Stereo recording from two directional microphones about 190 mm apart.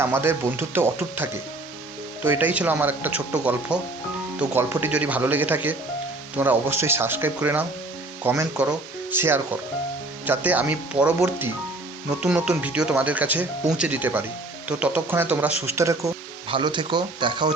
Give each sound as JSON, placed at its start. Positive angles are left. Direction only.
{"t": 0.0, "sound": "speech", "side_deg": -15}
{"t": 16.5, "sound": "speech", "side_deg": -25}